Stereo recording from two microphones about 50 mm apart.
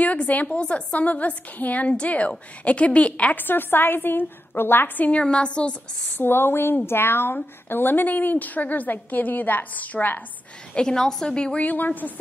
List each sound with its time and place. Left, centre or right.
0.0 s a woman's voice: left
3.3 s a woman's voice: left
4.9 s a woman's voice: left
5.2 s a woman's voice: left
6.1 s a woman's voice: left
10.7 s a woman's voice: centre
11.6 s a woman's voice: left